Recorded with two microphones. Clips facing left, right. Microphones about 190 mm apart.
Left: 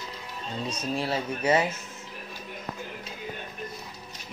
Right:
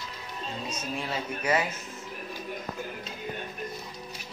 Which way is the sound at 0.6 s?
35° left (ahead or behind).